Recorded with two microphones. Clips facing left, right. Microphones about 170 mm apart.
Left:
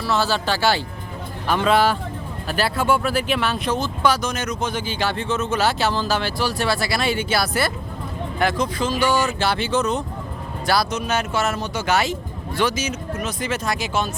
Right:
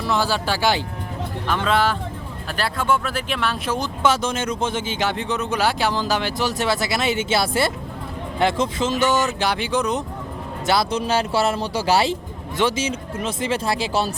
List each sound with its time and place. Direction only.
0.0 s speech: 15° right (ahead or behind)
1.5 s speech: 10° left (ahead or behind)
4.0 s speech: 25° right (ahead or behind)
10.7 s speech: 25° right (ahead or behind)